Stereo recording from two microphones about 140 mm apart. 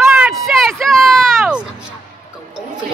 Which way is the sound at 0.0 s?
15° right (ahead or behind).